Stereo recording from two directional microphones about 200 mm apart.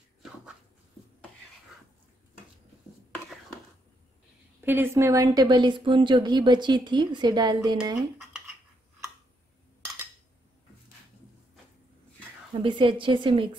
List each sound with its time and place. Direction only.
4.6 s a woman's voice: 10° right (ahead or behind)
12.6 s a woman's voice: 25° right (ahead or behind)